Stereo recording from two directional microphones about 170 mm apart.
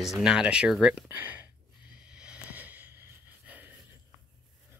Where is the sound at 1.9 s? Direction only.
5° right (ahead or behind).